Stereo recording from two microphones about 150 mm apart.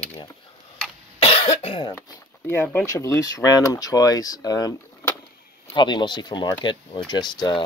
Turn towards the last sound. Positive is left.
turn(degrees=30)  # may be behind; listen again after turning